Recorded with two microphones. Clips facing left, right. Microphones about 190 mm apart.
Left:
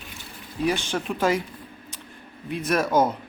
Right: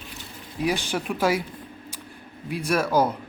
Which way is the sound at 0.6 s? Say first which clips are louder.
Left 1 dB; 10° right (ahead or behind).